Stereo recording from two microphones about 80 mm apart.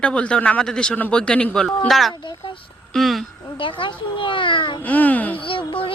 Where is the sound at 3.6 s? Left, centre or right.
Left.